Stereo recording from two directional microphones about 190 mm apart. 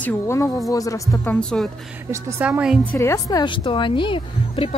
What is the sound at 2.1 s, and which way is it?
Speech, 10° right (ahead or behind).